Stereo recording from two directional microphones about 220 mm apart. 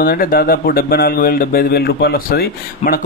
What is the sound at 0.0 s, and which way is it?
Speech, 40° left (ahead or behind).